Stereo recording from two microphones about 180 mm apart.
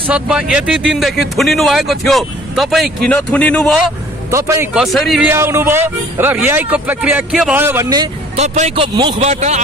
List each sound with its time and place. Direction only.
0.1 s speech: 5° right (ahead or behind)
4.3 s speech: 15° right (ahead or behind)
4.7 s speech: centre (ahead or behind)
5.3 s speech: 15° right (ahead or behind)
8.4 s speech: 35° right (ahead or behind)
8.9 s speech: 20° right (ahead or behind)
9.2 s speech: 40° right (ahead or behind)